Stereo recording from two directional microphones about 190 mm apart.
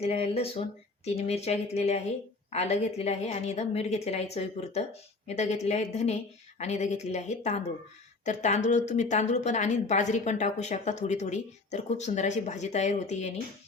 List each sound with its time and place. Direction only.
0.0 s a woman's voice: 35° left (ahead or behind)